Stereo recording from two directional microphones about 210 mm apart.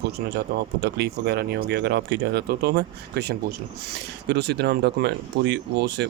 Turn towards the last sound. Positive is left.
turn(degrees=-55)  # may be behind; listen again after turning